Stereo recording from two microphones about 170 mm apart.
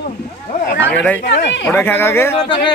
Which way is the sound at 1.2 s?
90° left.